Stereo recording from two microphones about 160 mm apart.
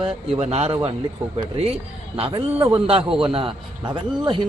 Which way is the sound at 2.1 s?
35° right (ahead or behind).